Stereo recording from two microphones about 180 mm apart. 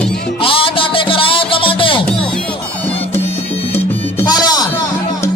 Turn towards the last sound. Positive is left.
turn(degrees=20)  # may be behind; listen again after turning